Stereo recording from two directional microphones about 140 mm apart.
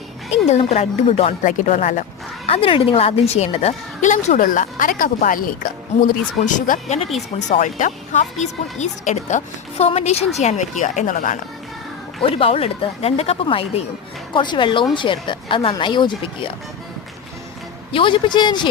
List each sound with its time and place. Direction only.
0.3 s a woman's voice: 50° left (ahead or behind)
1.5 s speech: 60° left (ahead or behind)
2.5 s a woman's voice: 40° left (ahead or behind); by 11.3 s 70° left (ahead or behind)
12.3 s a woman's voice: 45° left (ahead or behind)
17.9 s speech: 35° left (ahead or behind)